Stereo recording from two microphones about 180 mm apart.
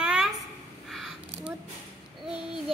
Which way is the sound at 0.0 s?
5° right (ahead or behind).